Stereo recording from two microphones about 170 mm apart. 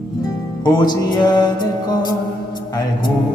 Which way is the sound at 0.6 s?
25° left (ahead or behind).